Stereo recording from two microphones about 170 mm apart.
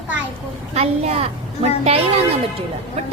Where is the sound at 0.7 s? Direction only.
40° right (ahead or behind).